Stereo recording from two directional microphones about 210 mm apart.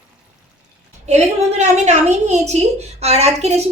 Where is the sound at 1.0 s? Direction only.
30° right (ahead or behind).